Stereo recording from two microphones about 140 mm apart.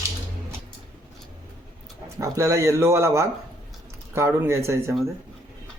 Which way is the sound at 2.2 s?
20° right (ahead or behind).